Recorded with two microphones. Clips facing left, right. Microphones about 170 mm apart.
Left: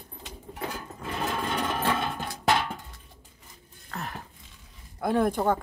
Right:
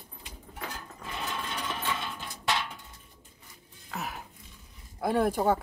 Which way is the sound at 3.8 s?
5° right (ahead or behind).